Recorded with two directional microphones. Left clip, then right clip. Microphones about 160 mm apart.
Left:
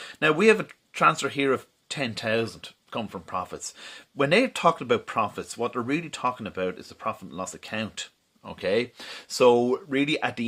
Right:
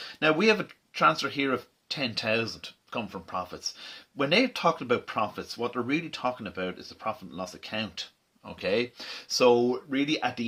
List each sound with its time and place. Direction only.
0.0 s speech: 40° left (ahead or behind)